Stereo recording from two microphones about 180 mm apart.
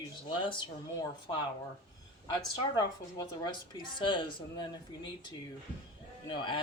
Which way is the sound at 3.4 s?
25° left (ahead or behind).